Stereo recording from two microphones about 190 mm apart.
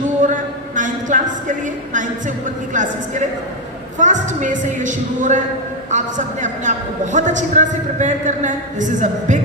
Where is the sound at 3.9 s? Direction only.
40° right (ahead or behind).